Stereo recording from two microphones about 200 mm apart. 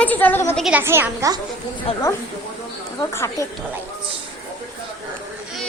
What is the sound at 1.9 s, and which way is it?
Speech, 30° left (ahead or behind).